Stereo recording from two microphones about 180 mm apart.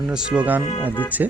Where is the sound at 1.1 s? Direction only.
10° right (ahead or behind).